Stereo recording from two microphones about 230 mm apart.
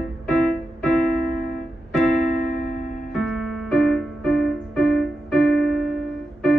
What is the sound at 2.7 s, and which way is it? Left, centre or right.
Music, left.